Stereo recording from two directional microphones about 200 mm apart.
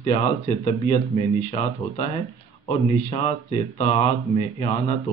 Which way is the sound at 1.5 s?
25° left (ahead or behind).